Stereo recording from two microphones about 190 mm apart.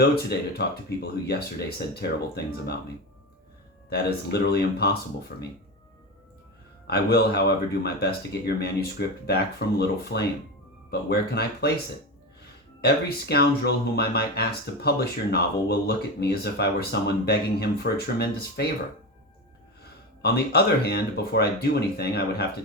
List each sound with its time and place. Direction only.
0.0 s speech: 60° left (ahead or behind)
3.8 s speech: 55° left (ahead or behind)
6.8 s speech: 55° left (ahead or behind)
12.8 s speech: 55° left (ahead or behind)
20.2 s speech: 55° left (ahead or behind)